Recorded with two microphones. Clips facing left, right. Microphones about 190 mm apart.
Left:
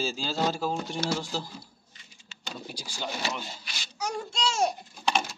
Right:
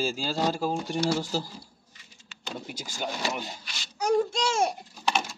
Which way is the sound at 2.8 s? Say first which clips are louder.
Right 3 dB; 20° right (ahead or behind).